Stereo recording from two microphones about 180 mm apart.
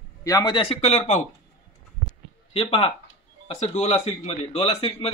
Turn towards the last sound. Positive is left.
turn(degrees=30)  # may be behind; listen again after turning